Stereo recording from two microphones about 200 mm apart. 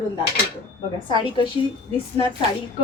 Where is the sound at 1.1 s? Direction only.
25° left (ahead or behind).